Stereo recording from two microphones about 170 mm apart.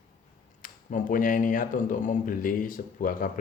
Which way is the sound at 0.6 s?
50° left (ahead or behind).